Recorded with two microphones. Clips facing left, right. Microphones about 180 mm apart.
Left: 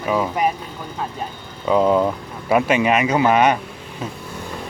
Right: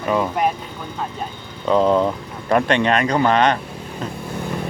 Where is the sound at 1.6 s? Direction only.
5° left (ahead or behind).